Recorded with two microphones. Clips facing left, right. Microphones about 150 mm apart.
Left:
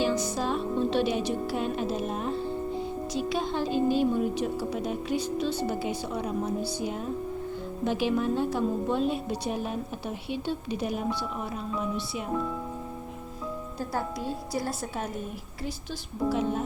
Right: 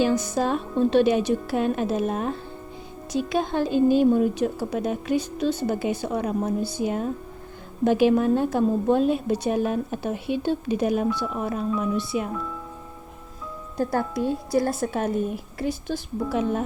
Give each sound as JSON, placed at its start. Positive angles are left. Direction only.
{"t": 0.0, "sound": "music", "side_deg": -50}
{"t": 0.3, "sound": "a woman's voice", "side_deg": -50}
{"t": 14.5, "sound": "a woman's voice", "side_deg": -55}